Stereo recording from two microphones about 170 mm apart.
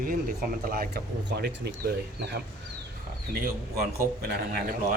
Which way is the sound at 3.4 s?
60° right (ahead or behind).